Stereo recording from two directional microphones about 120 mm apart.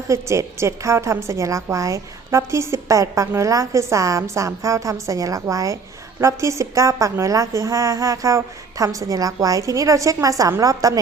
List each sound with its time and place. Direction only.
0.1 s a woman's voice: 25° right (ahead or behind)